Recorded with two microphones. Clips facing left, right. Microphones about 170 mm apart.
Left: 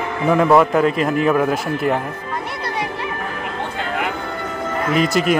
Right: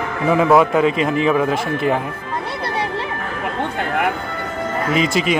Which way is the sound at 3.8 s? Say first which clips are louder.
Right 3 dB; 55° right (ahead or behind).